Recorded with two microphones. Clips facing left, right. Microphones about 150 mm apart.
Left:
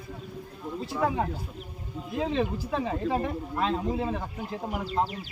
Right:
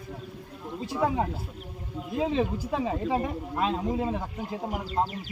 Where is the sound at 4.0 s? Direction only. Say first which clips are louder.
Right 1 dB; 15° right (ahead or behind).